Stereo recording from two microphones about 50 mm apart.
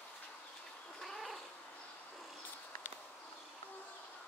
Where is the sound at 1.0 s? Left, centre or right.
Centre.